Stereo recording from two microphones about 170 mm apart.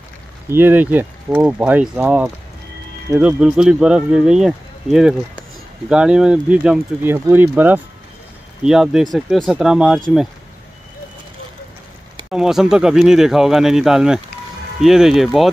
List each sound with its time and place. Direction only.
0.5 s speech: 15° right (ahead or behind)
12.3 s speech: 5° right (ahead or behind)